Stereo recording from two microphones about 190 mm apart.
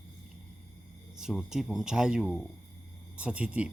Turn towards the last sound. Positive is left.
turn(degrees=-5)  # may be behind; listen again after turning